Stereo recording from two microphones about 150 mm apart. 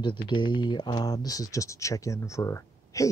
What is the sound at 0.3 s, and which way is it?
Speech, 30° left (ahead or behind).